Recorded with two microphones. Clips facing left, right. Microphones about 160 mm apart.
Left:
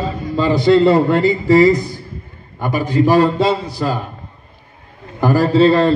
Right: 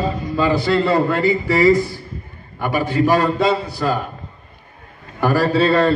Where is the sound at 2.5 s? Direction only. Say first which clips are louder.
Left 2 dB; 20° left (ahead or behind).